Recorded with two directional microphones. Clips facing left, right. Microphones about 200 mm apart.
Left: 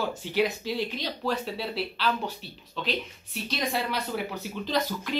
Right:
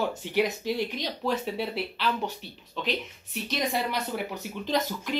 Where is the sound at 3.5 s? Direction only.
15° right (ahead or behind).